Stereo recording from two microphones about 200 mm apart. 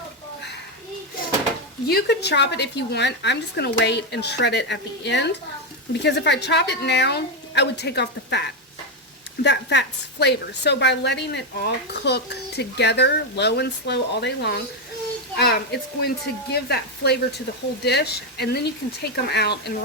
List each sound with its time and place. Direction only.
1.9 s a woman's voice: 55° left (ahead or behind)
9.4 s a woman's voice: 60° left (ahead or behind)